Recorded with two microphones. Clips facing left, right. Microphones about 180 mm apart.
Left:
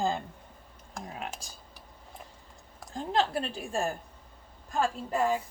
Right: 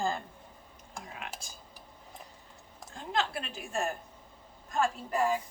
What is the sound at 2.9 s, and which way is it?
A woman's voice, 35° left (ahead or behind).